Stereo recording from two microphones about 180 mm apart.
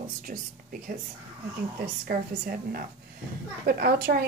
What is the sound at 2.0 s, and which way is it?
A woman's voice, 55° right (ahead or behind).